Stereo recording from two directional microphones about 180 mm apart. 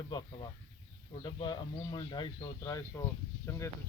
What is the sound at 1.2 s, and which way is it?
Speech, 25° left (ahead or behind).